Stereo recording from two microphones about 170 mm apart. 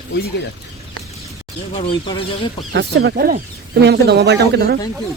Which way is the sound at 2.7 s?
65° right (ahead or behind).